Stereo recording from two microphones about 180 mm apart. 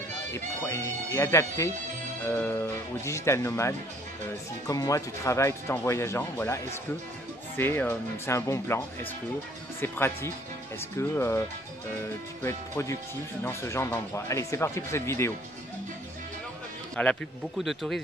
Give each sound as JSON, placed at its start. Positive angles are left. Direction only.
{"t": 0.3, "sound": "speech", "side_deg": 15}
{"t": 12.4, "sound": "speech", "side_deg": 15}
{"t": 16.9, "sound": "speech", "side_deg": 5}